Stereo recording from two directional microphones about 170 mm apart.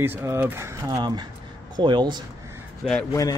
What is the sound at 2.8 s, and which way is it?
Speech, centre (ahead or behind).